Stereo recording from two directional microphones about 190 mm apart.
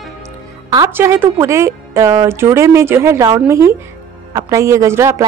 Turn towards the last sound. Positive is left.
turn(degrees=-15)  # may be behind; listen again after turning